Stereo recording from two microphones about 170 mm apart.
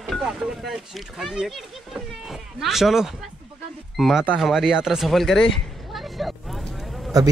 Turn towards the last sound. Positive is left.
turn(degrees=0)  # may be behind; listen again after turning